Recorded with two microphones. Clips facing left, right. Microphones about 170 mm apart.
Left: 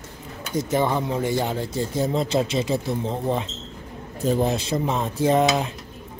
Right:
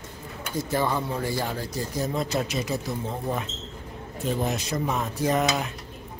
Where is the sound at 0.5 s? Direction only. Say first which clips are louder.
Left 4 dB; 20° left (ahead or behind).